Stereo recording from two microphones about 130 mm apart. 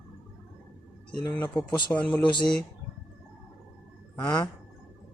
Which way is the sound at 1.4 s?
15° left (ahead or behind).